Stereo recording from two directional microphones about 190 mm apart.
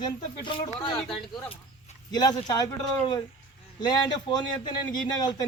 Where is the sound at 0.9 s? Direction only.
Centre (ahead or behind).